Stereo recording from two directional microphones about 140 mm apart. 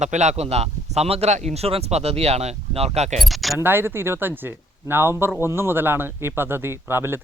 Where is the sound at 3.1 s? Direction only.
Centre (ahead or behind).